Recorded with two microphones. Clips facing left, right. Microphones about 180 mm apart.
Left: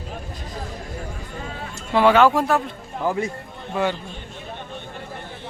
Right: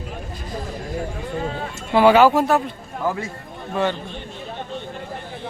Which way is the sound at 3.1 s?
20° left (ahead or behind).